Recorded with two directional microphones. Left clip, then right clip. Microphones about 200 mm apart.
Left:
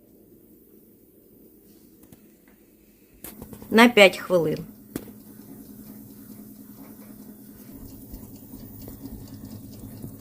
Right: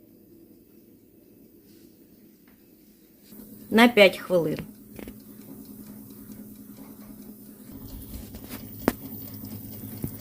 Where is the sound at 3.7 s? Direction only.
Centre (ahead or behind).